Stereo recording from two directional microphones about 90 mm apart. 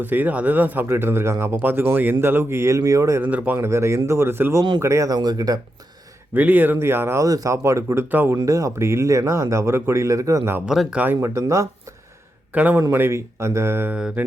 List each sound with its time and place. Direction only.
0.0 s speech: 20° right (ahead or behind); by 3.2 s 35° right (ahead or behind)
3.2 s speech: 15° right (ahead or behind)
3.6 s speech: 30° right (ahead or behind)
5.1 s speech: 50° right (ahead or behind)
6.3 s speech: 20° right (ahead or behind)
7.3 s speech: 40° right (ahead or behind)
8.0 s speech: 20° right (ahead or behind)
8.4 s speech: 35° right (ahead or behind)
10.9 s speech: 20° right (ahead or behind)
11.2 s speech: 35° right (ahead or behind)
12.5 s a man's voice: 20° right (ahead or behind)
13.9 s speech: 15° right (ahead or behind)